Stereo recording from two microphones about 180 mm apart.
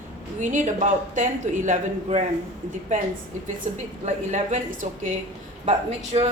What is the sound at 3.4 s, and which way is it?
Speech, 45° right (ahead or behind).